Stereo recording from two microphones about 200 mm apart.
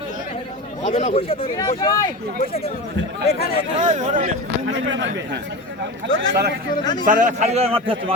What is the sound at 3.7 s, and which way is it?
Speech, 35° right (ahead or behind).